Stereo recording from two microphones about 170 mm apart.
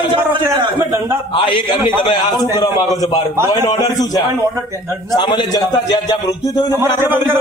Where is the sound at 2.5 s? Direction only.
25° left (ahead or behind).